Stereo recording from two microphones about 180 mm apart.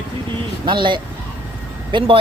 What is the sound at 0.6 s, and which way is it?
Speech, 25° right (ahead or behind).